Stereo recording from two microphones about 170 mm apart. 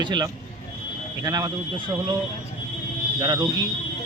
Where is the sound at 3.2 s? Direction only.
25° right (ahead or behind).